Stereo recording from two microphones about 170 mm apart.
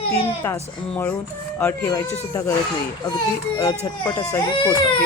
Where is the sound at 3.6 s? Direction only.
20° left (ahead or behind).